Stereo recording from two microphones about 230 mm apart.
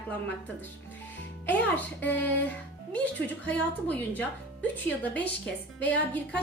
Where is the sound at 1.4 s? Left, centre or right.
Centre.